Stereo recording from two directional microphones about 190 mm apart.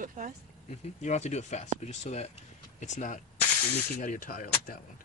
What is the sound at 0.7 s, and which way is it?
Speech, 35° left (ahead or behind).